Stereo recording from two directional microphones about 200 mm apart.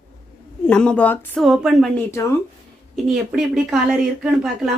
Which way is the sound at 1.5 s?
Centre (ahead or behind).